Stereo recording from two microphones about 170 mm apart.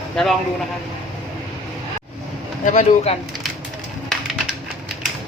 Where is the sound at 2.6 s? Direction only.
40° left (ahead or behind).